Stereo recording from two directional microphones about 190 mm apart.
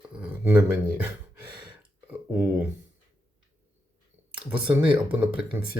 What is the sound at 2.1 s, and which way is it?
Speech, 10° right (ahead or behind).